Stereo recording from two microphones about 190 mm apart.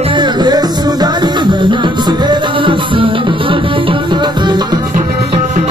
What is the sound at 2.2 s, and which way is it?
Music, 25° right (ahead or behind).